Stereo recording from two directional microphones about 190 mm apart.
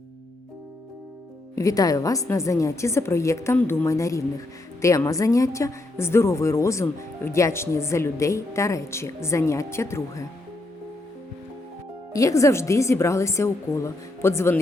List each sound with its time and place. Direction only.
1.5 s a woman's voice: 20° left (ahead or behind)
12.1 s a woman's voice: 15° left (ahead or behind)